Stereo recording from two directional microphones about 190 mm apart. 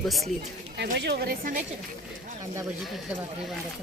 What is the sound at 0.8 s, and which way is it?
Speech, 60° right (ahead or behind).